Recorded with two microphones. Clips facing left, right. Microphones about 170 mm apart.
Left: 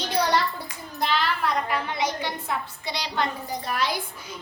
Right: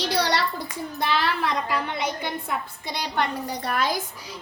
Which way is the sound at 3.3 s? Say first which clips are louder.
Right 3 dB; 70° right (ahead or behind).